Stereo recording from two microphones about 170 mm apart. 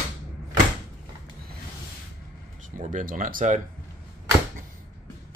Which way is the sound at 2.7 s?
50° right (ahead or behind).